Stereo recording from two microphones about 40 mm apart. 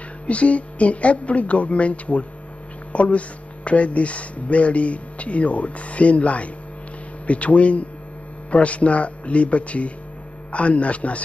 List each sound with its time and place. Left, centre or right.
0.3 s speech: left